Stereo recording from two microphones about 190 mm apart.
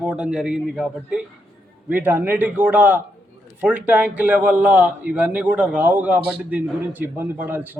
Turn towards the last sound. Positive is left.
turn(degrees=-10)  # may be behind; listen again after turning